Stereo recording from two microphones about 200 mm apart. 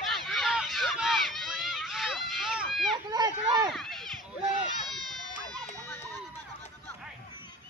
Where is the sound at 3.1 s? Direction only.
20° right (ahead or behind).